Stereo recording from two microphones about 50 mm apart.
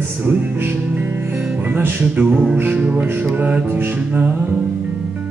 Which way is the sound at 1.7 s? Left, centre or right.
Right.